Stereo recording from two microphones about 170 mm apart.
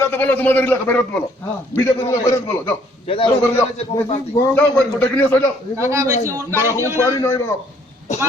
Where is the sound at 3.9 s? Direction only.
20° left (ahead or behind).